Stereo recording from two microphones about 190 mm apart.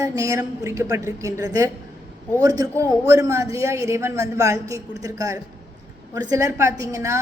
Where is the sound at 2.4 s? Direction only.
20° right (ahead or behind).